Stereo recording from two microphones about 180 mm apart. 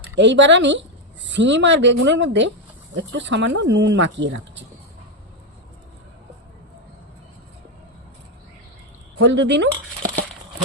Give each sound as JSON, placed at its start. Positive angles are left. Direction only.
{"t": 0.2, "sound": "a woman's voice", "side_deg": -80}
{"t": 9.2, "sound": "a woman's voice", "side_deg": -80}